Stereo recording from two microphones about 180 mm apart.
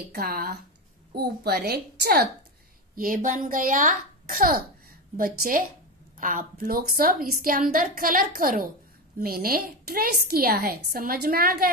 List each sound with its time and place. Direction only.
0.1 s a woman's voice: 55° right (ahead or behind)
3.0 s a child's voice: 50° right (ahead or behind)